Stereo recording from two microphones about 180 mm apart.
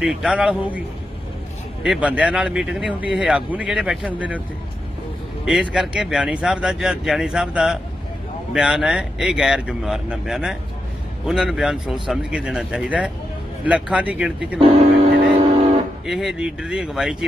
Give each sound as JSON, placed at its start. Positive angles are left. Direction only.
{"t": 0.0, "sound": "speech", "side_deg": -5}
{"t": 5.4, "sound": "speech", "side_deg": -5}
{"t": 14.6, "sound": "speech", "side_deg": -35}
{"t": 15.3, "sound": "vehicle", "side_deg": -30}
{"t": 16.1, "sound": "speech", "side_deg": 0}